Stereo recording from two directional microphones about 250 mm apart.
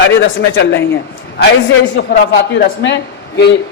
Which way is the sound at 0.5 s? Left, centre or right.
Left.